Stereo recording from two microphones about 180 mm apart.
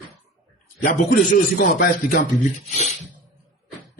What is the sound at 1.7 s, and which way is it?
Speech, 55° left (ahead or behind).